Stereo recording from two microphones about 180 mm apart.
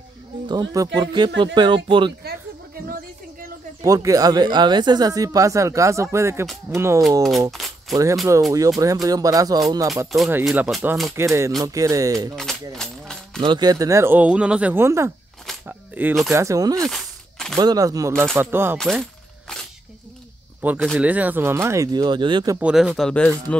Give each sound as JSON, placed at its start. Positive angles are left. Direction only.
{"t": 0.5, "sound": "speech", "side_deg": -20}
{"t": 3.8, "sound": "speech", "side_deg": -20}
{"t": 10.4, "sound": "speech", "side_deg": -5}
{"t": 12.4, "sound": "a sound", "side_deg": 0}
{"t": 13.4, "sound": "speech", "side_deg": -25}
{"t": 15.6, "sound": "coin", "side_deg": -10}
{"t": 16.3, "sound": "speech", "side_deg": -20}
{"t": 16.9, "sound": "a sound", "side_deg": 5}
{"t": 17.6, "sound": "speech", "side_deg": -20}
{"t": 18.8, "sound": "speech", "side_deg": 0}
{"t": 20.6, "sound": "speech", "side_deg": -10}
{"t": 22.6, "sound": "speech", "side_deg": -5}